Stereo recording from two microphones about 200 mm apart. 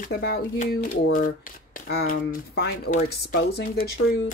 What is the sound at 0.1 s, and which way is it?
Speech, 50° left (ahead or behind).